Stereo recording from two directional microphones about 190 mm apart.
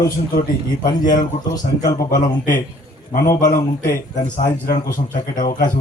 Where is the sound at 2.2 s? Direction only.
45° left (ahead or behind).